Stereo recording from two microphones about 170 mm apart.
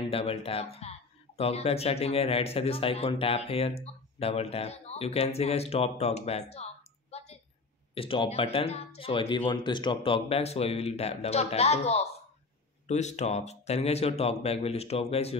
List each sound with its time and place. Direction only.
0.1 s speech: 35° left (ahead or behind)
6.5 s a sound: 40° left (ahead or behind)
7.9 s speech: 30° left (ahead or behind)